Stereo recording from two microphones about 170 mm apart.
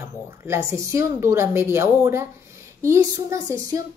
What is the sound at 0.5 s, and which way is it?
A child's voice, 15° right (ahead or behind).